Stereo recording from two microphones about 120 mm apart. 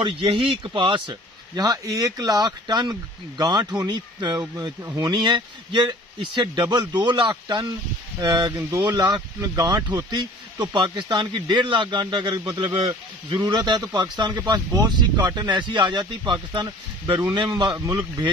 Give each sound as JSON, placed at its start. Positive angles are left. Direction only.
{"t": 0.7, "sound": "speech", "side_deg": -40}
{"t": 8.6, "sound": "speech", "side_deg": -25}